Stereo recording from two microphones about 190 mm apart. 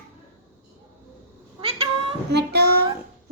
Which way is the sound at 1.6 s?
30° right (ahead or behind).